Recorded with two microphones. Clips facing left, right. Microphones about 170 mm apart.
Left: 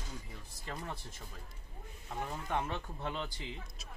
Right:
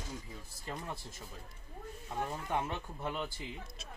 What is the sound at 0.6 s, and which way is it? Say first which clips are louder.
Speech: right 1 dB; 10° right (ahead or behind).